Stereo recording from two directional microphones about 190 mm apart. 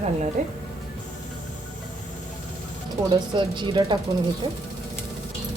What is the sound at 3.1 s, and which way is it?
Speech, 25° right (ahead or behind).